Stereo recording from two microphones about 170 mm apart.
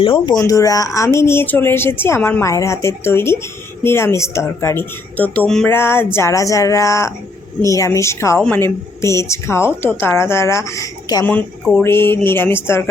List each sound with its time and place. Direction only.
0.0 s speech: 30° left (ahead or behind)
0.3 s speech: 20° left (ahead or behind)
11.3 s speech: 10° left (ahead or behind)